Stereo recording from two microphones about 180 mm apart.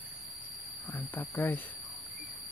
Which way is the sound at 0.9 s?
10° left (ahead or behind).